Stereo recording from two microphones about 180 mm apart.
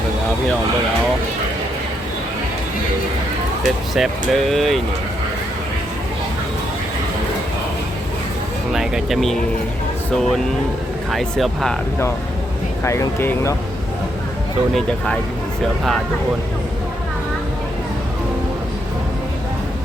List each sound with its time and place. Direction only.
3.9 s speech: centre (ahead or behind)
8.7 s speech: centre (ahead or behind)
12.8 s speech: 15° left (ahead or behind)
14.7 s speech: 5° left (ahead or behind)